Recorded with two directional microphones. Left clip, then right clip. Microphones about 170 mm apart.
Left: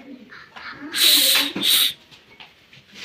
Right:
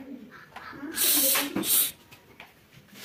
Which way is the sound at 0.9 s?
10° right (ahead or behind).